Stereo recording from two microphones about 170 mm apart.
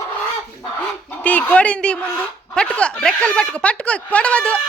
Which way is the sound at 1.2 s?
10° left (ahead or behind).